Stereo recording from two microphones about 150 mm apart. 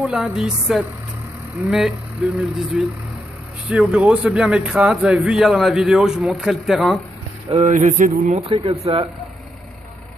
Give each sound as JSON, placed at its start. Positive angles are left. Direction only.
{"t": 0.0, "sound": "a man's voice", "side_deg": -5}
{"t": 7.5, "sound": "speech", "side_deg": -50}
{"t": 8.5, "sound": "speech", "side_deg": -40}